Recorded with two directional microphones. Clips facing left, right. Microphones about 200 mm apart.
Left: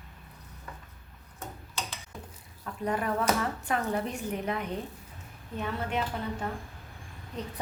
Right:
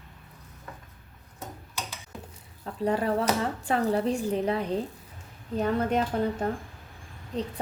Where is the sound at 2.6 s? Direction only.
30° right (ahead or behind).